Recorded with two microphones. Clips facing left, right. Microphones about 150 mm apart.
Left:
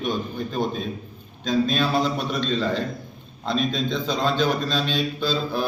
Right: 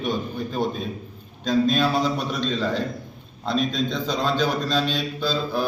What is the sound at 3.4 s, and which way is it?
Mantra, 10° right (ahead or behind).